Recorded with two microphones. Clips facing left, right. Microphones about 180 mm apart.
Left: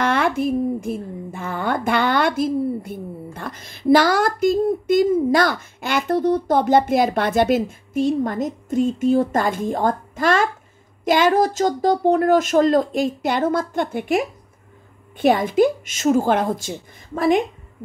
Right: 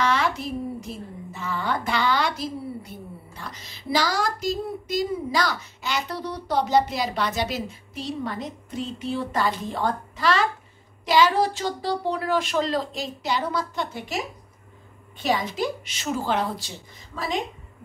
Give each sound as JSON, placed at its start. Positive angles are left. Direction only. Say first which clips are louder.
{"t": 0.0, "sound": "a woman's voice", "louder": "left 5 dB", "side_deg": 55}